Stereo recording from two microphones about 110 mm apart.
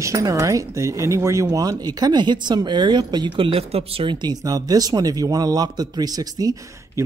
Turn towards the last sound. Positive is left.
turn(degrees=-35)  # may be behind; listen again after turning